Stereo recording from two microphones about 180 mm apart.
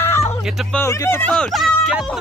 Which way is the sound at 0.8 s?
15° left (ahead or behind).